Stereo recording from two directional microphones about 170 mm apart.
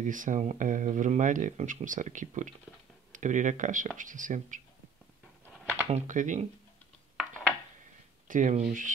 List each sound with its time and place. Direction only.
0.0 s speech: 50° right (ahead or behind)
5.9 s speech: 45° right (ahead or behind)
7.2 s a sound: 5° left (ahead or behind)
8.3 s speech: 45° right (ahead or behind)